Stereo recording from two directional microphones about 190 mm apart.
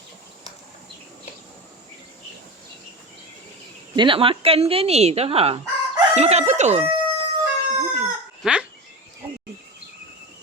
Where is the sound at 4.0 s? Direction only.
25° right (ahead or behind).